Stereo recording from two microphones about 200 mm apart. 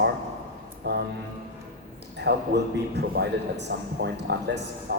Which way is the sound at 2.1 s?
55° right (ahead or behind).